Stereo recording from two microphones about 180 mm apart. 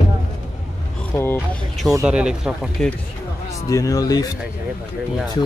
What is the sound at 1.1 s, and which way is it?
Speech, 10° left (ahead or behind).